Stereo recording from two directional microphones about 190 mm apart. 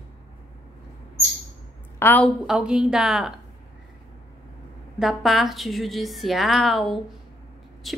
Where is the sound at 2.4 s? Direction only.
5° right (ahead or behind).